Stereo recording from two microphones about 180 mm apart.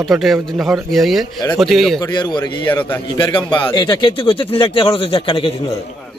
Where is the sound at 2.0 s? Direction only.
25° left (ahead or behind).